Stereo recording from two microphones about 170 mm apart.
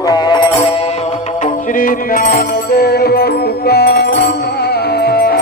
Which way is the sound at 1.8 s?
60° left (ahead or behind).